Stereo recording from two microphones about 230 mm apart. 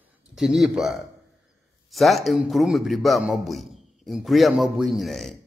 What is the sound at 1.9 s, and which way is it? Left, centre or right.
A man's voice, centre.